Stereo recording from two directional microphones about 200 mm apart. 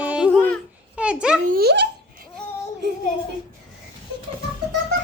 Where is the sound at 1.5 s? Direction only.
50° right (ahead or behind).